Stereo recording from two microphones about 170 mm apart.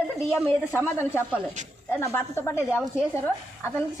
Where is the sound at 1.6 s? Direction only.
45° right (ahead or behind).